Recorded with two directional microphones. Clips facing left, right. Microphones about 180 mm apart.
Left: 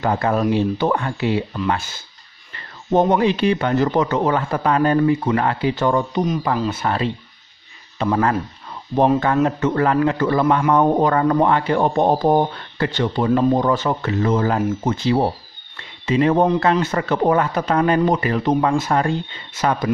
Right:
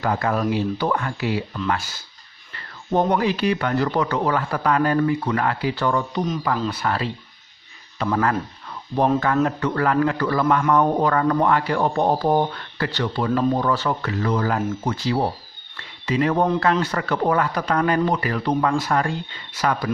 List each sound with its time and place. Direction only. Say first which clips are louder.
0.0 s speech: left 3 dB; 25° left (ahead or behind)
15.7 s a sound: left 4 dB; 25° left (ahead or behind)
16.8 s speech: left 4 dB; 25° left (ahead or behind)